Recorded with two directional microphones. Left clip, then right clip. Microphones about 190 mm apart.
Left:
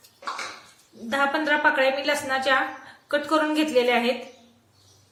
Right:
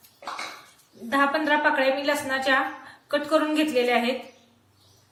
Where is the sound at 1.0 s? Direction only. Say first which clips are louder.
Right 1 dB; 20° left (ahead or behind).